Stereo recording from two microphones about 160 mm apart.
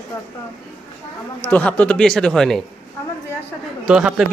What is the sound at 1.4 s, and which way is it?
A man's voice, 10° left (ahead or behind).